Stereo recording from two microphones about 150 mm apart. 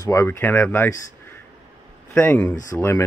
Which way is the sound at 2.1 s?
10° left (ahead or behind).